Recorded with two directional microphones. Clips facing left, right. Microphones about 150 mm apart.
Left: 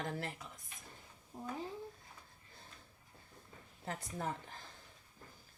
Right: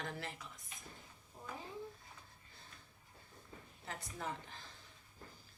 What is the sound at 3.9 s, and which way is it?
Speech, 40° left (ahead or behind).